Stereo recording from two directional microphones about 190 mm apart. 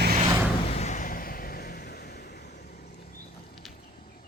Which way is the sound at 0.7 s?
35° left (ahead or behind).